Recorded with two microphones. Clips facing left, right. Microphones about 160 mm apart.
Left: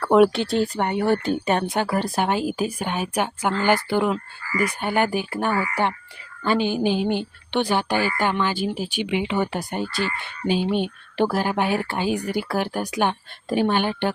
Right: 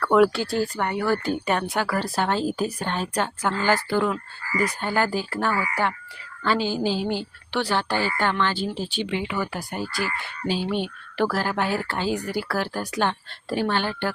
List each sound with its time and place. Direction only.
0.0 s a woman's voice: 25° left (ahead or behind)